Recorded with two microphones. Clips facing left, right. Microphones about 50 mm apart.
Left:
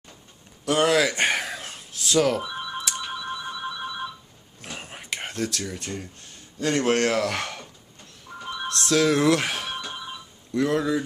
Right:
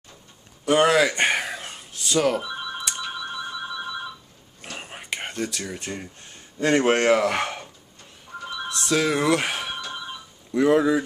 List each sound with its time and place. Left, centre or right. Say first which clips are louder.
0.7 s a sound: right 2 dB; centre
4.6 s whispering: right 1 dB; centre
5.8 s speech: right 1 dB; centre
8.3 s music: right 2 dB; centre
8.6 s speech: left 2 dB; centre
10.5 s speech: right 5 dB; centre